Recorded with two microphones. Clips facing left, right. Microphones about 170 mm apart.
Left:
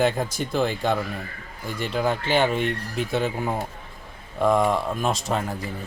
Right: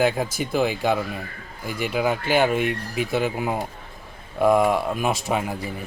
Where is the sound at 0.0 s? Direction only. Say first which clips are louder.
Right 1 dB; 5° right (ahead or behind).